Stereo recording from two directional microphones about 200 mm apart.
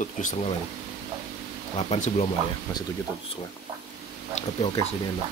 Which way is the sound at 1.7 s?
30° left (ahead or behind).